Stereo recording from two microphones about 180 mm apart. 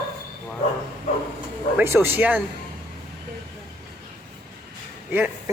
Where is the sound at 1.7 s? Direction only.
15° right (ahead or behind).